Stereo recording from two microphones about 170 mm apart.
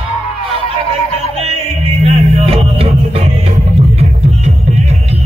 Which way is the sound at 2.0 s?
35° right (ahead or behind).